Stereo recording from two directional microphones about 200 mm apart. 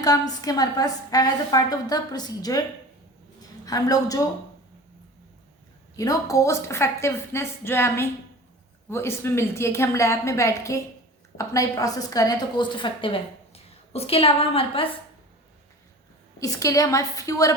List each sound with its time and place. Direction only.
0.0 s a woman's voice: 20° left (ahead or behind)
3.7 s a woman's voice: 20° left (ahead or behind)
6.0 s a woman's voice: 15° left (ahead or behind)
16.4 s a woman's voice: 15° left (ahead or behind)